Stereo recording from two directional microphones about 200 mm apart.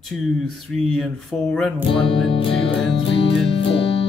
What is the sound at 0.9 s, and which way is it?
Speech, centre (ahead or behind).